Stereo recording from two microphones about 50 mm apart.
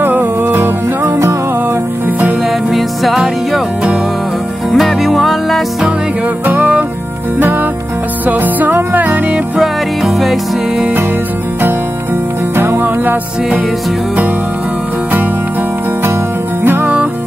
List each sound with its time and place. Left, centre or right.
0.0 s music: right
1.0 s music: right
2.7 s music: centre
4.7 s music: centre
6.4 s music: right
8.3 s music: right
9.6 s music: centre
12.5 s music: right
16.6 s music: right